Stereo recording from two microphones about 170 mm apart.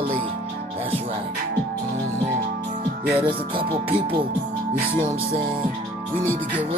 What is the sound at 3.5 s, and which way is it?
Speech, 30° right (ahead or behind).